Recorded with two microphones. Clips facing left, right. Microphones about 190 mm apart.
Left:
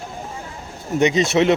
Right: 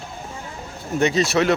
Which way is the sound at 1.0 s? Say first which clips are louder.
Left 2 dB; 20° left (ahead or behind).